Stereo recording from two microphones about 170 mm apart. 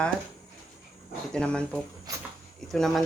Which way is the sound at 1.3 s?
5° left (ahead or behind).